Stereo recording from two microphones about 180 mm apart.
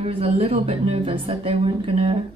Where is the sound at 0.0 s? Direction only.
35° right (ahead or behind).